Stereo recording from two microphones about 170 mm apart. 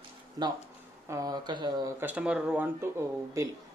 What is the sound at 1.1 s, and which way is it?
Speech, 20° right (ahead or behind).